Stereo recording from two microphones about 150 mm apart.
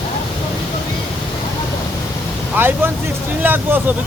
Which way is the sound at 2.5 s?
15° right (ahead or behind).